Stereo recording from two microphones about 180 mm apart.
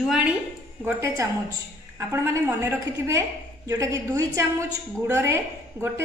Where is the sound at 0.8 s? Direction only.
15° right (ahead or behind).